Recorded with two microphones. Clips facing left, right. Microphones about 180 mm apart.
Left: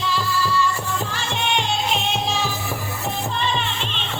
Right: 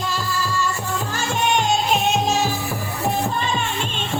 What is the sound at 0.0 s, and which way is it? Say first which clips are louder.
Music: left 2 dB; 45° right (ahead or behind).